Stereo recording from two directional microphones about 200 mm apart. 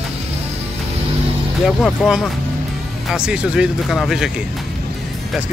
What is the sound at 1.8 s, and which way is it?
Speech, centre (ahead or behind).